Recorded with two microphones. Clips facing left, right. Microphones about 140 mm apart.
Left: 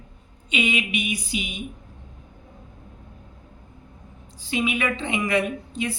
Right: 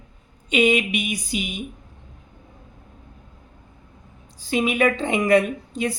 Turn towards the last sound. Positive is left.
turn(degrees=-40)  # may be behind; listen again after turning